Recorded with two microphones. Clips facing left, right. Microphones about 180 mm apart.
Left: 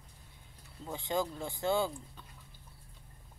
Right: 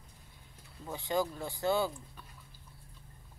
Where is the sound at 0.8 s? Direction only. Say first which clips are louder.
Right 1 dB; 20° left (ahead or behind).